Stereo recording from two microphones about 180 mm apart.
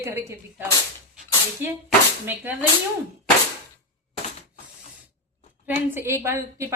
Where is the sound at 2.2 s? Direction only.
10° right (ahead or behind).